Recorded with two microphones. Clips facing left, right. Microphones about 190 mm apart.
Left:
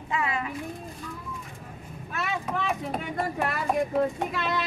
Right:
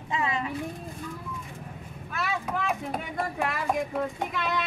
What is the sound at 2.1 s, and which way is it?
Speech, 5° right (ahead or behind).